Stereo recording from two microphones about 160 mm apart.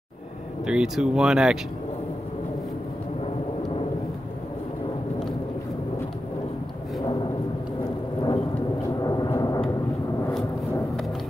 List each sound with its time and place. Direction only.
0.7 s speech: 5° right (ahead or behind)
8.8 s vehicle: 25° left (ahead or behind)